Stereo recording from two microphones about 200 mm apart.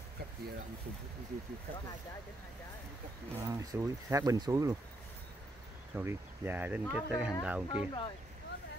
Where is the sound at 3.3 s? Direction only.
15° right (ahead or behind).